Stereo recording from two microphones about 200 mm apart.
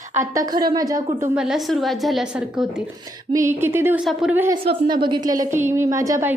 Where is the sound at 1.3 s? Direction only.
Centre (ahead or behind).